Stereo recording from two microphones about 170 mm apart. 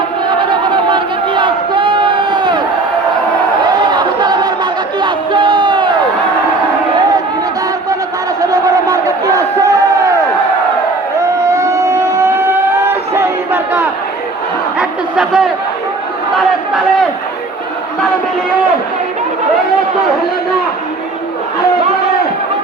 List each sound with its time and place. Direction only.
0.3 s crowd: 30° right (ahead or behind)
3.8 s crowd: 25° right (ahead or behind)
8.4 s crowd: 20° right (ahead or behind)
11.5 s vehicle: 15° right (ahead or behind)
12.7 s a sound: 15° right (ahead or behind)